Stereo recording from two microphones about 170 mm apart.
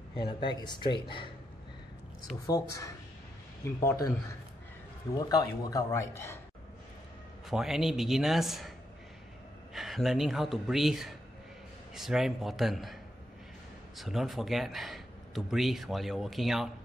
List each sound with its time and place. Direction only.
0.1 s speech: 30° left (ahead or behind)
2.4 s speech: 20° left (ahead or behind)
5.3 s speech: 20° left (ahead or behind)
7.4 s a man's voice: centre (ahead or behind)
9.8 s a man's voice: centre (ahead or behind)
13.9 s a man's voice: centre (ahead or behind)